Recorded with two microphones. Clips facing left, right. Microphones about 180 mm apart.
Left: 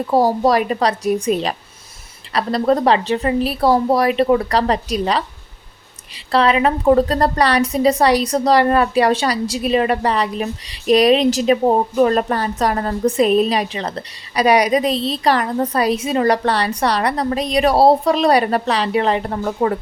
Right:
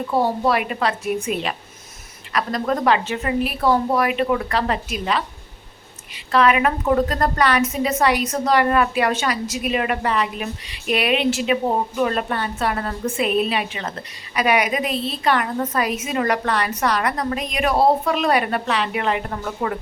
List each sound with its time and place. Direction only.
0.1 s a woman's voice: 40° left (ahead or behind)